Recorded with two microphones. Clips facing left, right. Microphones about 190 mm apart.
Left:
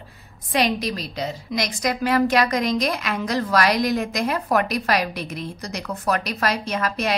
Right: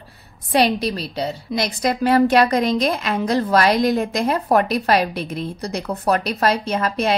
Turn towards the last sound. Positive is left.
turn(degrees=-30)  # may be behind; listen again after turning